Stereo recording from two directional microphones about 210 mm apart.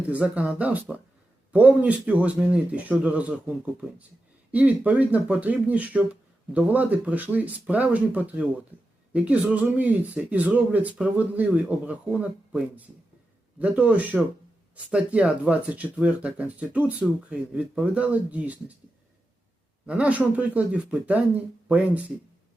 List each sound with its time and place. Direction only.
0.1 s speech: 5° right (ahead or behind)
19.9 s speech: 5° right (ahead or behind)